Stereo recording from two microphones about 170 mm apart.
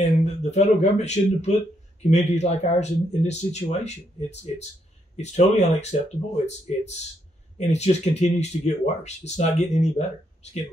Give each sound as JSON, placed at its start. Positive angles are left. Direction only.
{"t": 0.0, "sound": "speech", "side_deg": 40}